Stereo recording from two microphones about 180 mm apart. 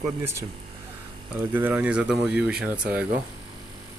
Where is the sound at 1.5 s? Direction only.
10° right (ahead or behind).